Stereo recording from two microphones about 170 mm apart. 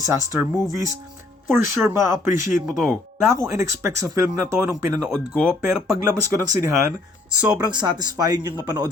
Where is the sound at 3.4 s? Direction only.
20° right (ahead or behind).